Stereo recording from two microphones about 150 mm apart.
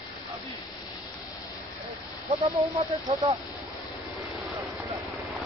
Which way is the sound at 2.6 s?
40° right (ahead or behind).